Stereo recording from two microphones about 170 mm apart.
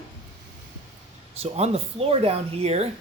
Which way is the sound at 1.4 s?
40° right (ahead or behind).